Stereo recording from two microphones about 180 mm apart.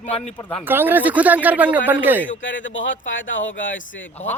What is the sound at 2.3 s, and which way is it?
Speech, 90° left.